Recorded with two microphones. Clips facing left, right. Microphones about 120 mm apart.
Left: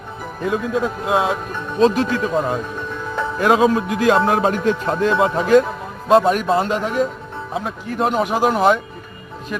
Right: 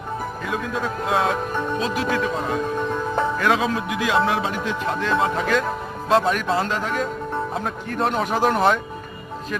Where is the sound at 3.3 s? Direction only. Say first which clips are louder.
Left 9 dB; 25° left (ahead or behind).